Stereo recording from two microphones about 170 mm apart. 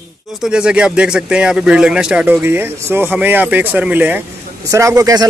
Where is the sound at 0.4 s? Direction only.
5° right (ahead or behind).